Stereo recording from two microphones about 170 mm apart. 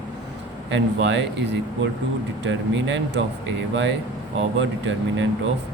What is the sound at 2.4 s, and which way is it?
Speech, 90° right.